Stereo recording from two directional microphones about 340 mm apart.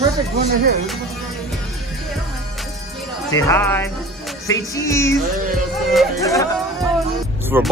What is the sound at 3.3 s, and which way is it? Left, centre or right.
Music, centre.